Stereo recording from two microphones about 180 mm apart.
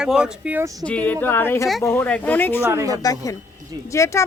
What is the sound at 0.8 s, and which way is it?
A woman's voice, 5° left (ahead or behind).